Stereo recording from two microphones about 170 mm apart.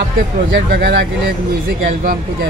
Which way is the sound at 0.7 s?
65° right (ahead or behind).